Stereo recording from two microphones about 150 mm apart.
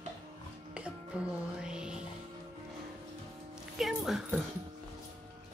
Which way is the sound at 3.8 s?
5° right (ahead or behind).